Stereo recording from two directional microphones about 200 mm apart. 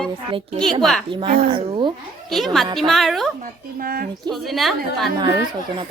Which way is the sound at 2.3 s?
Centre (ahead or behind).